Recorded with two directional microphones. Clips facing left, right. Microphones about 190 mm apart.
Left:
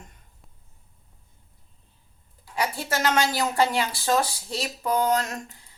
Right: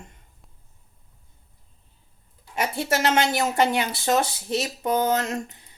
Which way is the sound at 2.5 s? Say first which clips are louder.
Right 3 dB; 25° right (ahead or behind).